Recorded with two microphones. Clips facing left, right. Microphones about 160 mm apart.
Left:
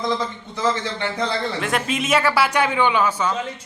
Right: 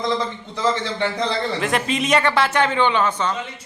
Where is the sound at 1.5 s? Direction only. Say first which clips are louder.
Right 2 dB; centre (ahead or behind).